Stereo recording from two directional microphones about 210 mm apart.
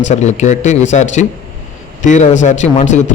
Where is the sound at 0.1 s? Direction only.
35° left (ahead or behind).